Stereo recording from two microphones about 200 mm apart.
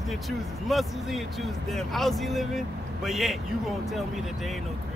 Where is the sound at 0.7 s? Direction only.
Centre (ahead or behind).